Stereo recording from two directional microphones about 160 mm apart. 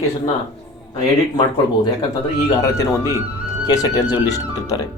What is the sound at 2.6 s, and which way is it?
Speech, 20° left (ahead or behind).